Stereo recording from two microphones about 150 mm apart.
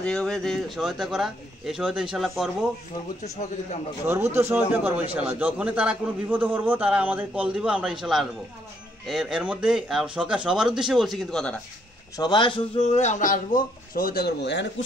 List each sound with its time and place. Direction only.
0.0 s speech: 5° left (ahead or behind)
4.1 s a man's voice: 15° right (ahead or behind); by 11.6 s 5° left (ahead or behind)
12.2 s speech: 30° left (ahead or behind); by 14.3 s 80° left